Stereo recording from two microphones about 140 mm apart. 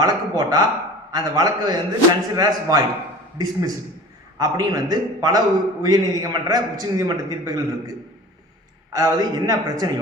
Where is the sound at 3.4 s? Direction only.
25° right (ahead or behind).